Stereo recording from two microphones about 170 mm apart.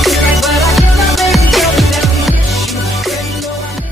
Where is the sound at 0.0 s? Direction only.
Centre (ahead or behind).